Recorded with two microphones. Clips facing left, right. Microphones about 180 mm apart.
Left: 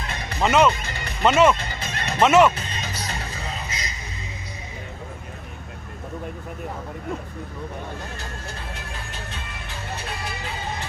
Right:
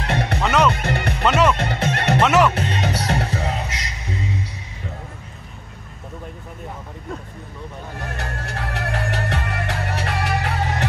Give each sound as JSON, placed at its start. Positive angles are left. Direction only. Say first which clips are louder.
{"t": 0.0, "sound": "music", "louder": "right 10 dB", "side_deg": -70}
{"t": 0.4, "sound": "music", "louder": "left 2 dB", "side_deg": 5}
{"t": 0.7, "sound": "music", "louder": "right 10 dB", "side_deg": -70}
{"t": 1.6, "sound": "speech", "louder": "right 9 dB", "side_deg": -70}
{"t": 2.2, "sound": "speech", "louder": "left 2 dB", "side_deg": 0}
{"t": 2.5, "sound": "music", "louder": "right 10 dB", "side_deg": -70}
{"t": 8.0, "sound": "music", "louder": "right 5 dB", "side_deg": -70}